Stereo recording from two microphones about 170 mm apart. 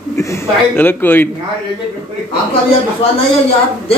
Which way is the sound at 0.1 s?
15° left (ahead or behind).